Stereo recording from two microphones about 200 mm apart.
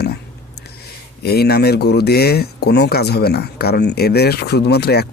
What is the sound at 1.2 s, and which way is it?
Speech, 50° left (ahead or behind).